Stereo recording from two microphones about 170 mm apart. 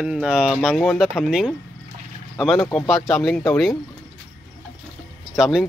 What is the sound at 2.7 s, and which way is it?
Speech, centre (ahead or behind).